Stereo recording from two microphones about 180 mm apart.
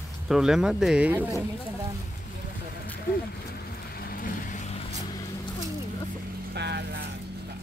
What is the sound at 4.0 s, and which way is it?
Vehicle, 55° left (ahead or behind).